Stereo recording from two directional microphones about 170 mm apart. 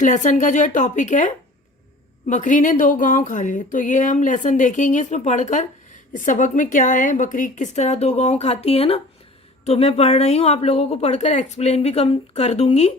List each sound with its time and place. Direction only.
0.0 s a woman's voice: 45° left (ahead or behind)